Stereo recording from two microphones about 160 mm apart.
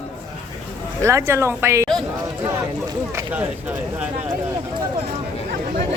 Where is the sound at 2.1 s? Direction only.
20° right (ahead or behind).